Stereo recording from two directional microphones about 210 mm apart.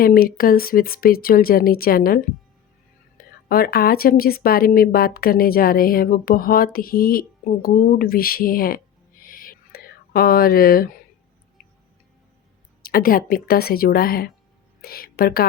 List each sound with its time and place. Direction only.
0.0 s speech: 45° left (ahead or behind)
3.5 s speech: 45° left (ahead or behind)
9.2 s whispering: 45° left (ahead or behind)
12.8 s speech: 45° left (ahead or behind)